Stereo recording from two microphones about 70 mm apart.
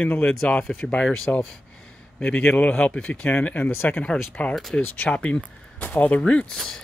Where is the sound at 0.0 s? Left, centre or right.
Centre.